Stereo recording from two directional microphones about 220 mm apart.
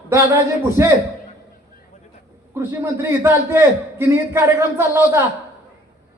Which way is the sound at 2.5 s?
10° right (ahead or behind).